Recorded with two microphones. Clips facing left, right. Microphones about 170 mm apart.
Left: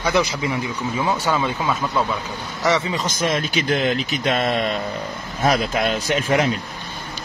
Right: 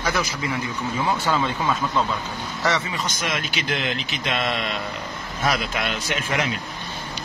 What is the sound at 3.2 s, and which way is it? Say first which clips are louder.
Speech: left 6 dB; 40° left (ahead or behind).